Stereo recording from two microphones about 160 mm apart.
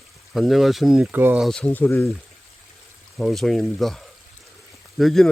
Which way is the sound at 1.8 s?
15° left (ahead or behind).